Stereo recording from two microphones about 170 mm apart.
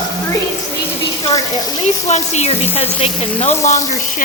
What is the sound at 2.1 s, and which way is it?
A woman's voice, 40° left (ahead or behind).